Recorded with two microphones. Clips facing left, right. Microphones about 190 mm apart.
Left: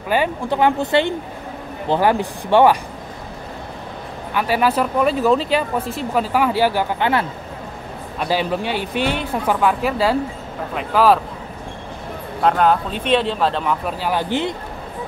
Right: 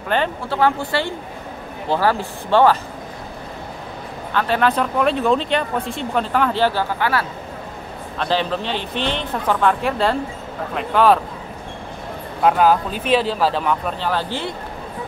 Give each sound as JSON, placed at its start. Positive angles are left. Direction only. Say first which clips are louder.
{"t": 0.1, "sound": "speech", "louder": "left 2 dB", "side_deg": 15}
{"t": 4.3, "sound": "speech", "louder": "even", "side_deg": 10}
{"t": 8.2, "sound": "speech", "louder": "left 1 dB", "side_deg": 10}
{"t": 12.4, "sound": "speech", "louder": "right 1 dB", "side_deg": -5}
{"t": 14.0, "sound": "speech", "louder": "left 5 dB", "side_deg": 15}